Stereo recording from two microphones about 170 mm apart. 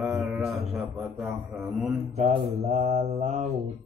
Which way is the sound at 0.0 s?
5° right (ahead or behind).